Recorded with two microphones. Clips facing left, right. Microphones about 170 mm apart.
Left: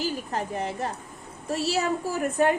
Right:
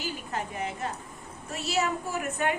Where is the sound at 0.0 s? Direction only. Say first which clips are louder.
Left 5 dB; 35° left (ahead or behind).